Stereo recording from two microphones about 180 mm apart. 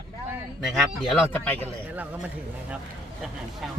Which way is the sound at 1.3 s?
10° left (ahead or behind).